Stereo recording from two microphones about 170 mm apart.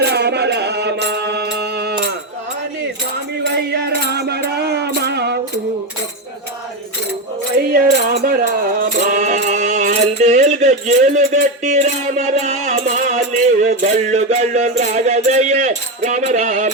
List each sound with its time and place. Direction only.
0.0 s music: 75° right (ahead or behind)
3.5 s music: 80° right
7.7 s music: 60° right (ahead or behind)